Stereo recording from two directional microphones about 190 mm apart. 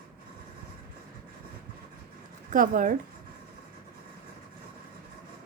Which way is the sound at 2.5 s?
45° right (ahead or behind).